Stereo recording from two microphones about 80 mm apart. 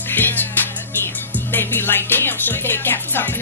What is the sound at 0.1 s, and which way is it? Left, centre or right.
Music, left.